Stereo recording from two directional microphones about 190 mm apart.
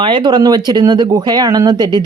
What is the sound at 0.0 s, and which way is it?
Speech, 25° right (ahead or behind).